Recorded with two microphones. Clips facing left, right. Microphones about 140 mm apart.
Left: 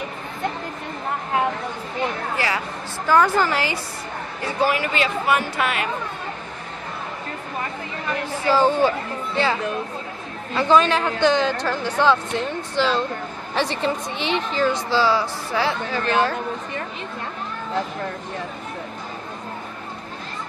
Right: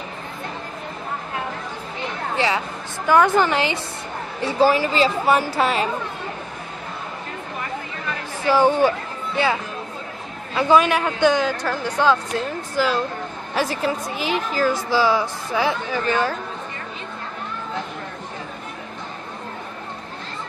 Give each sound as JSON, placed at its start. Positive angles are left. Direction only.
{"t": 2.3, "sound": "a sound", "side_deg": -20}
{"t": 3.1, "sound": "a woman's voice", "side_deg": -15}
{"t": 4.4, "sound": "speech", "side_deg": -30}
{"t": 8.5, "sound": "a woman's voice", "side_deg": -15}
{"t": 10.5, "sound": "a woman's voice", "side_deg": -10}